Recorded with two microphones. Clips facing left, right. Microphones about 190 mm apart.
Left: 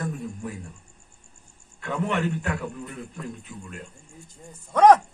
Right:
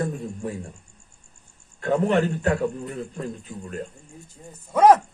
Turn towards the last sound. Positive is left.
turn(degrees=-5)  # may be behind; listen again after turning